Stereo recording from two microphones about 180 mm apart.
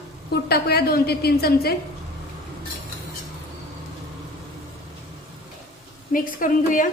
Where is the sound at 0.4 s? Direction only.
60° left (ahead or behind).